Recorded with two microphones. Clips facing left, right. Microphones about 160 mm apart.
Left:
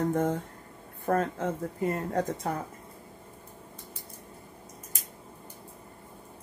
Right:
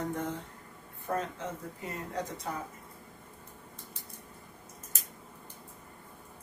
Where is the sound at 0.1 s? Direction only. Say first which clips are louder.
Left 8 dB; 50° left (ahead or behind).